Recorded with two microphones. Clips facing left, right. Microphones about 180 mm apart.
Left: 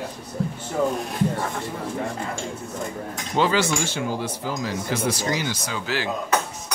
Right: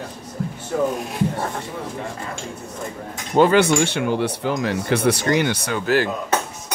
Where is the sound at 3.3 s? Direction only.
55° right (ahead or behind).